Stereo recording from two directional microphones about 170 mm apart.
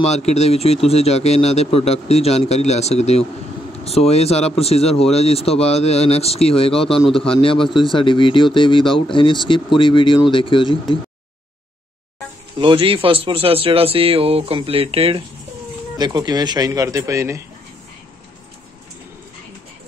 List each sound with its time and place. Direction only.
0.0 s speech: 40° left (ahead or behind)
12.5 s a man's voice: 30° right (ahead or behind)